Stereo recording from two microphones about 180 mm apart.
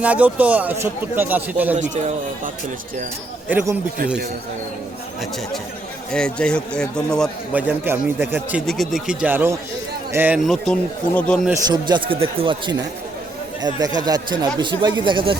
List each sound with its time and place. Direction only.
0.0 s a man's voice: 5° right (ahead or behind)
1.7 s speech: 40° right (ahead or behind)
6.1 s a man's voice: 5° left (ahead or behind)
7.5 s a man's voice: 10° right (ahead or behind)
8.6 s a man's voice: centre (ahead or behind)
10.4 s a man's voice: centre (ahead or behind)
11.6 s speech: 25° right (ahead or behind)